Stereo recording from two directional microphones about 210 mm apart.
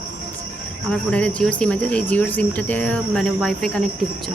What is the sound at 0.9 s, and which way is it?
Speech, 5° left (ahead or behind).